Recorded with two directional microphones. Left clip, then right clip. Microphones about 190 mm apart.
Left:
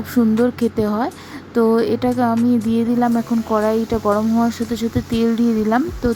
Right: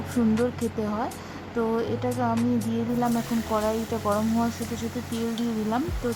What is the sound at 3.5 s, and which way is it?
Speech, 25° left (ahead or behind).